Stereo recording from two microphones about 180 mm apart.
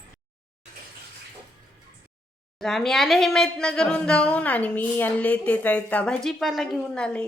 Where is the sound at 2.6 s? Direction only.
Centre (ahead or behind).